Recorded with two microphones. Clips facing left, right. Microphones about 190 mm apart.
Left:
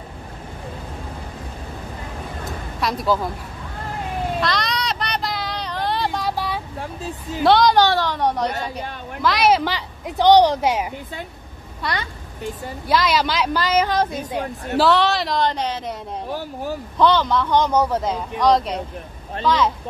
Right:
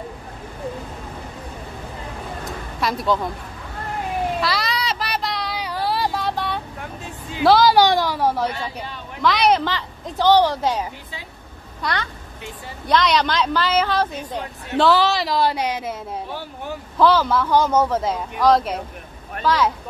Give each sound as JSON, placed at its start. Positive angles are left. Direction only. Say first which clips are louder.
{"t": 2.8, "sound": "a woman's voice", "louder": "even", "side_deg": 0}
{"t": 4.4, "sound": "child singing", "louder": "even", "side_deg": -5}
{"t": 5.6, "sound": "vehicle", "louder": "right 1 dB", "side_deg": -5}
{"t": 6.8, "sound": "a sound", "louder": "left 4 dB", "side_deg": 35}
{"t": 7.4, "sound": "a woman's voice", "louder": "right 1 dB", "side_deg": -5}
{"t": 8.5, "sound": "a woman's voice", "louder": "left 2 dB", "side_deg": 45}
{"t": 9.2, "sound": "a woman's voice", "louder": "even", "side_deg": 0}
{"t": 14.8, "sound": "a woman's voice", "louder": "even", "side_deg": 0}
{"t": 16.3, "sound": "a woman's voice", "louder": "left 4 dB", "side_deg": 45}
{"t": 17.0, "sound": "a woman's voice", "louder": "right 1 dB", "side_deg": -5}